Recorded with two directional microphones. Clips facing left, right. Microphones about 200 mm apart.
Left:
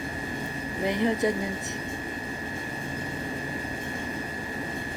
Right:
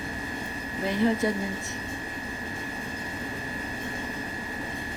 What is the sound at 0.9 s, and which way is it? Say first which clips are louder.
Speech: right 1 dB; 20° left (ahead or behind).